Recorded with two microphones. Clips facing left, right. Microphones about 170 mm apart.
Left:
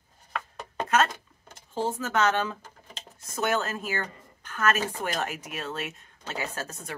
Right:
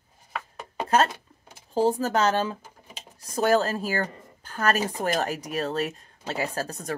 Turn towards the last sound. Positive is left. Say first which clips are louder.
# right 6 dB
turn(degrees=-40)  # may be behind; listen again after turning